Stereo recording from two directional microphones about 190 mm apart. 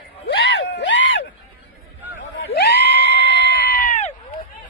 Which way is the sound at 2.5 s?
60° left (ahead or behind).